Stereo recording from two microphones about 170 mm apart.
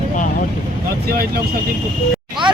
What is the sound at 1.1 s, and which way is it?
Speech, 60° right (ahead or behind).